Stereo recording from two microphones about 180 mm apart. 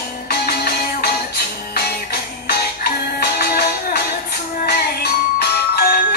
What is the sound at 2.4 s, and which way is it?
Music, 60° left (ahead or behind).